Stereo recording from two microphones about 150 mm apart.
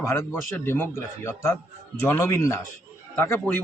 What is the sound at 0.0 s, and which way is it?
A man's voice, 20° left (ahead or behind).